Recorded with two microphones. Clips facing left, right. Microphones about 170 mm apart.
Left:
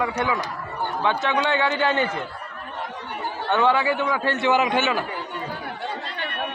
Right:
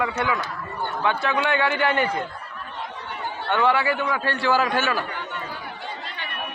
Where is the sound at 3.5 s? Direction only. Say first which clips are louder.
Left 1 dB; 20° left (ahead or behind).